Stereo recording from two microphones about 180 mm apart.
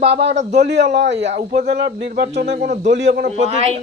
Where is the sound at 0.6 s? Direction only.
70° right (ahead or behind).